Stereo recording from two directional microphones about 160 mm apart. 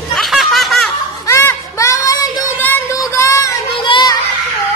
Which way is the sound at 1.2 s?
20° left (ahead or behind).